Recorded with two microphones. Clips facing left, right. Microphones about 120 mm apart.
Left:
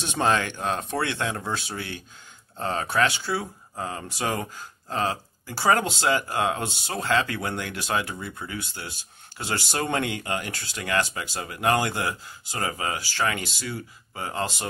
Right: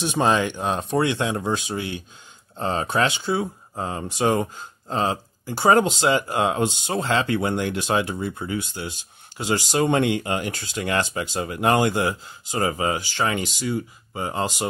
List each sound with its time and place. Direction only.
0.0 s speech: 15° right (ahead or behind)